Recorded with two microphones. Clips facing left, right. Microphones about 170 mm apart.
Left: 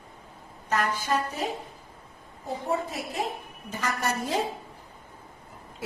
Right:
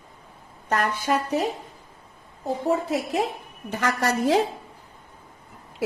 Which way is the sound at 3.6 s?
75° right (ahead or behind).